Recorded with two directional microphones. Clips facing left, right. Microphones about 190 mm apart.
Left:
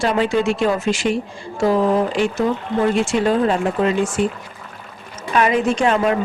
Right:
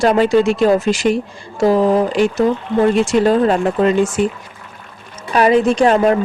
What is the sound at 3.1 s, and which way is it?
A woman's voice, 40° right (ahead or behind).